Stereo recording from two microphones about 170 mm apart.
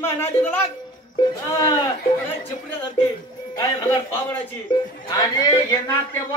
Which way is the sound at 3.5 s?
20° left (ahead or behind).